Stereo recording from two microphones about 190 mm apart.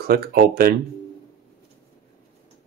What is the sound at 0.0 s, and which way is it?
Speech, 55° right (ahead or behind).